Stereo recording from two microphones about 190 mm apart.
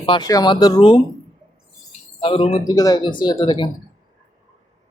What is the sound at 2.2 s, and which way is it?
Speech, 30° left (ahead or behind).